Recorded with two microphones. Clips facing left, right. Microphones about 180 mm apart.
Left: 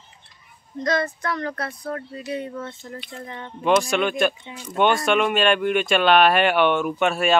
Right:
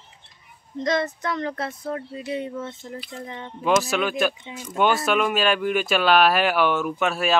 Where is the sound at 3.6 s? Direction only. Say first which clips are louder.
Left 2 dB; 5° right (ahead or behind).